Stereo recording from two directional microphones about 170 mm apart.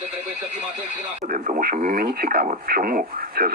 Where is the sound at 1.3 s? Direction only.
45° right (ahead or behind).